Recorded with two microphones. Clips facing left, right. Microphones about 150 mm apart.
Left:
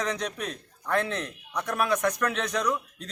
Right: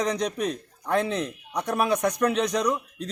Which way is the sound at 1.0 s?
15° right (ahead or behind).